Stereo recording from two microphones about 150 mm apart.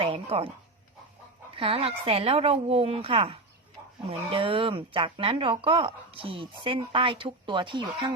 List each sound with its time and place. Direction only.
0.0 s speech: 35° right (ahead or behind)
1.5 s speech: 40° right (ahead or behind)